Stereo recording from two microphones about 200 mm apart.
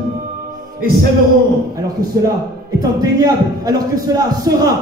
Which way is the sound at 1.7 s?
20° right (ahead or behind).